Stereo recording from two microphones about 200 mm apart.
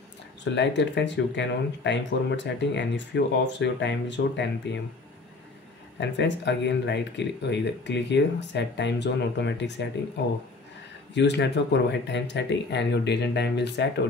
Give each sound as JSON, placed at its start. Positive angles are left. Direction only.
{"t": 0.5, "sound": "speech", "side_deg": 60}
{"t": 5.9, "sound": "speech", "side_deg": 60}
{"t": 11.1, "sound": "speech", "side_deg": 60}